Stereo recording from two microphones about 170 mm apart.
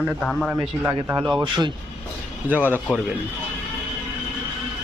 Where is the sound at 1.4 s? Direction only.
25° right (ahead or behind).